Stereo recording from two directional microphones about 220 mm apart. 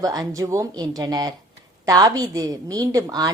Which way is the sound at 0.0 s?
15° right (ahead or behind).